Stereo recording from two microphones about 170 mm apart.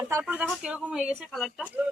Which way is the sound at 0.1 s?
10° right (ahead or behind).